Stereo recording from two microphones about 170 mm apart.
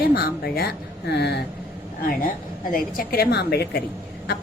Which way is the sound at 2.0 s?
60° left (ahead or behind).